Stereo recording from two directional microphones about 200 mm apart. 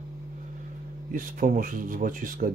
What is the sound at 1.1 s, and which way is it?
Speech, 45° right (ahead or behind).